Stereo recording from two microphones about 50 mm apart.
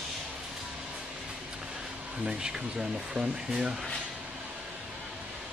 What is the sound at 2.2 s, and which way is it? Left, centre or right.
Speech, centre.